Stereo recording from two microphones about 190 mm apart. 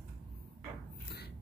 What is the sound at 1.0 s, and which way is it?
Music, 60° left (ahead or behind).